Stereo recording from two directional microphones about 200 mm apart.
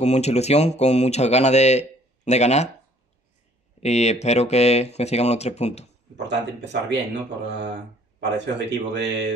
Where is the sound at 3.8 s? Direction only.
35° left (ahead or behind).